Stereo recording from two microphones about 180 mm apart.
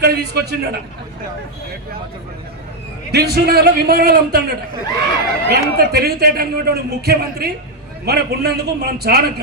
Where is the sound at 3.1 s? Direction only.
65° right (ahead or behind).